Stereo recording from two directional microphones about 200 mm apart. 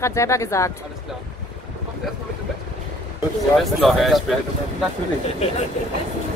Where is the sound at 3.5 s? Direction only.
Centre (ahead or behind).